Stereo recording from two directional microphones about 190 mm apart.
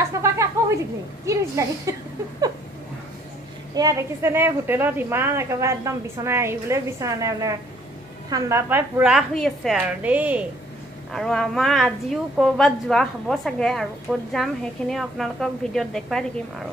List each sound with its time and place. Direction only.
0.0 s a sound: 15° right (ahead or behind)
1.2 s a woman's voice: 15° right (ahead or behind)
3.7 s a woman's voice: 15° right (ahead or behind); by 16.3 s centre (ahead or behind)